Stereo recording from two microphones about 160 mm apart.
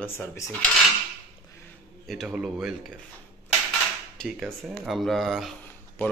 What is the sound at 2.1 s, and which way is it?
Speech, centre (ahead or behind).